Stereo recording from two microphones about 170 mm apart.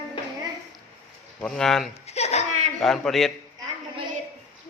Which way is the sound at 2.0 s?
40° left (ahead or behind).